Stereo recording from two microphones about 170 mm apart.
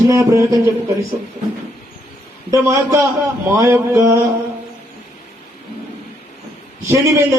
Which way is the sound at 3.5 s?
20° right (ahead or behind).